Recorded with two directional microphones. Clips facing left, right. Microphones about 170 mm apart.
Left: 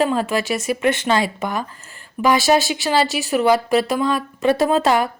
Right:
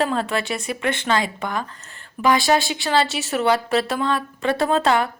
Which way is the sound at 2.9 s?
Centre (ahead or behind).